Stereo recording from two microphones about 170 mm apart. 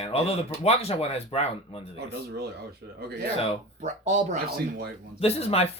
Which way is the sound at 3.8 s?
45° right (ahead or behind).